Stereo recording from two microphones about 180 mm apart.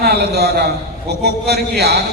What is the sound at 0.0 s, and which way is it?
Speech, 65° right (ahead or behind).